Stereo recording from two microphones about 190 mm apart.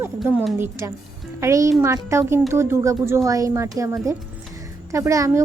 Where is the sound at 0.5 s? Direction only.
15° right (ahead or behind).